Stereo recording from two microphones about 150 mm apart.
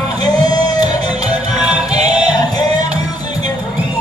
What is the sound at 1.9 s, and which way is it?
Music, 50° right (ahead or behind).